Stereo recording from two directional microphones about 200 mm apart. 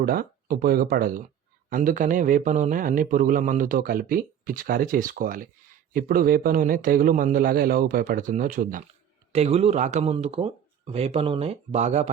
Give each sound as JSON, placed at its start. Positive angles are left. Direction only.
{"t": 0.0, "sound": "a man's voice", "side_deg": -45}
{"t": 9.3, "sound": "speech", "side_deg": -30}